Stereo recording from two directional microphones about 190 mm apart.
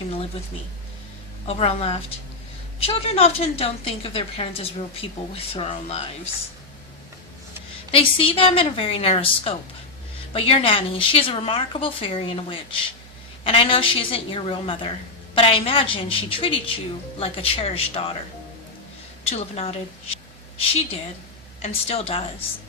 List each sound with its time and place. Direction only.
1.5 s a woman's voice: 30° left (ahead or behind)
7.9 s a woman's voice: 30° left (ahead or behind)
19.2 s a woman's voice: 35° left (ahead or behind)